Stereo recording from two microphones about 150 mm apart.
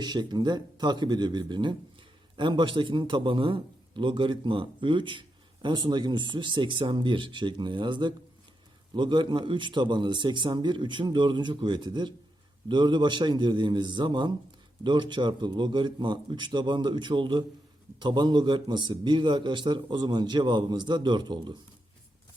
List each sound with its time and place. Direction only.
0.0 s a man's voice: 30° right (ahead or behind)